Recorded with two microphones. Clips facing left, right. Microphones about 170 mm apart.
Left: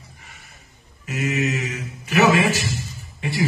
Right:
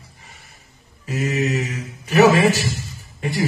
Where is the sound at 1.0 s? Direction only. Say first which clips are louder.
Right 2 dB; 35° right (ahead or behind).